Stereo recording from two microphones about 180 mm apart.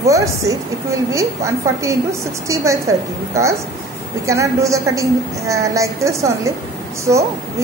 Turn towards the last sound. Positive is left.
turn(degrees=-15)  # may be behind; listen again after turning